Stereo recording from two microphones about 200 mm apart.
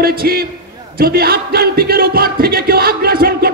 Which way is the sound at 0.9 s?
50° right (ahead or behind).